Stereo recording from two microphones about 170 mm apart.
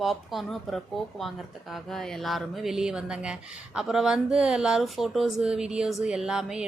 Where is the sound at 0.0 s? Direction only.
Centre (ahead or behind).